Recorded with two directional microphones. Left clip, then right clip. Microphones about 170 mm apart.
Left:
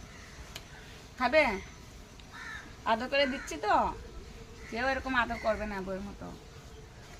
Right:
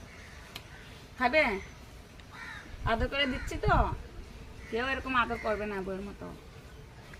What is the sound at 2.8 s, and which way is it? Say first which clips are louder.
Speech: left 2 dB; 10° left (ahead or behind).